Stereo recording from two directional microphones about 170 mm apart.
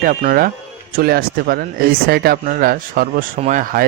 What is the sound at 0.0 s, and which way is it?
Speech, 55° right (ahead or behind).